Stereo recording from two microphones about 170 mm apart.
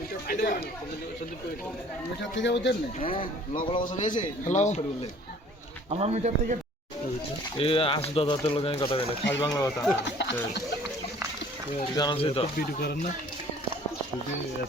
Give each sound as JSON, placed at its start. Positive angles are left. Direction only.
{"t": 0.3, "sound": "speech", "side_deg": 50}
{"t": 2.4, "sound": "speech", "side_deg": 90}
{"t": 3.0, "sound": "a man's voice", "side_deg": 30}
{"t": 4.0, "sound": "speech", "side_deg": 45}
{"t": 5.9, "sound": "speech", "side_deg": -40}
{"t": 7.5, "sound": "speech", "side_deg": 30}
{"t": 10.0, "sound": "speech", "side_deg": 90}
{"t": 11.9, "sound": "speech", "side_deg": 30}
{"t": 12.5, "sound": "speech", "side_deg": 65}